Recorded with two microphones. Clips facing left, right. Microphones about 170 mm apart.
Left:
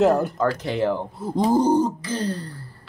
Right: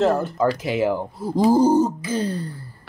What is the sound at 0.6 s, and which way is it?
Speech, 5° right (ahead or behind).